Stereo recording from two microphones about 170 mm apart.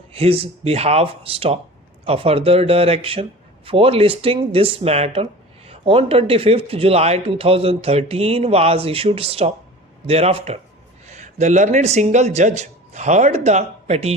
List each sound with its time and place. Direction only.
0.1 s speech: 35° right (ahead or behind)